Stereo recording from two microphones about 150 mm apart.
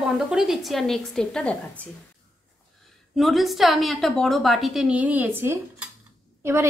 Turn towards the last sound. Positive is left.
turn(degrees=-20)  # may be behind; listen again after turning